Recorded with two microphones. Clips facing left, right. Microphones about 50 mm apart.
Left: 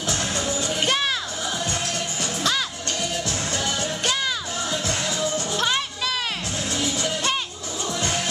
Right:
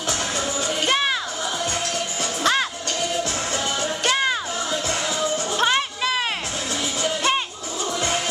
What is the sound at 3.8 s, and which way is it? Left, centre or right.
Music, right.